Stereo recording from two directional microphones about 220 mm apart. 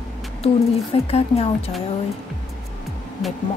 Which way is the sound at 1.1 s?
25° left (ahead or behind).